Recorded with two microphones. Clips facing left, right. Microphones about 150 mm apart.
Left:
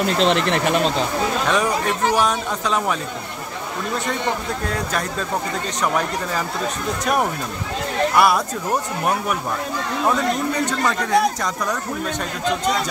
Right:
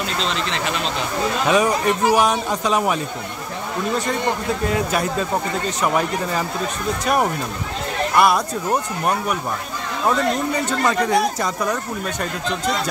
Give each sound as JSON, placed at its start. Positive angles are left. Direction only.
{"t": 0.2, "sound": "speech", "side_deg": 60}
{"t": 1.5, "sound": "speech", "side_deg": -10}
{"t": 5.8, "sound": "speech", "side_deg": -5}
{"t": 8.2, "sound": "speech", "side_deg": 0}
{"t": 10.6, "sound": "speech", "side_deg": -5}